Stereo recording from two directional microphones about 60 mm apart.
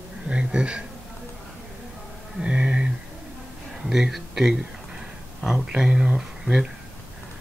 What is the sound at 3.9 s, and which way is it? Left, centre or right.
Speech, centre.